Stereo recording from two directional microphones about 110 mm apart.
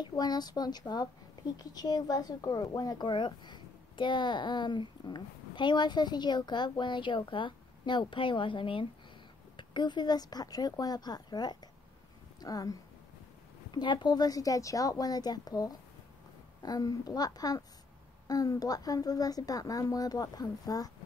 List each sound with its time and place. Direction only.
0.0 s a woman's voice: 40° left (ahead or behind)
13.7 s a woman's voice: 45° left (ahead or behind)